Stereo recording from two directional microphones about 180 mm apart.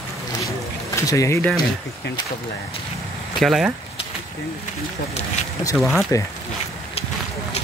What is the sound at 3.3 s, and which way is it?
Speech, centre (ahead or behind).